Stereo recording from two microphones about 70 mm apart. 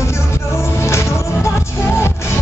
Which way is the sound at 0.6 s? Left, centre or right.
Left.